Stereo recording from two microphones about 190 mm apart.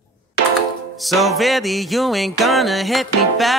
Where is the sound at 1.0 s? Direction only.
Centre (ahead or behind).